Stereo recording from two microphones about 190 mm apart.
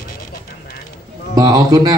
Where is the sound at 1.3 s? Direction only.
20° right (ahead or behind).